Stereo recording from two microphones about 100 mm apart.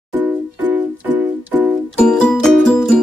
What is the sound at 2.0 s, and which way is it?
Music, 10° left (ahead or behind).